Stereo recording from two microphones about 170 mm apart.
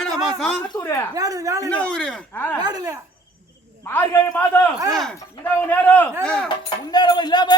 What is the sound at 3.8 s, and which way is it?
A man's voice, 10° left (ahead or behind).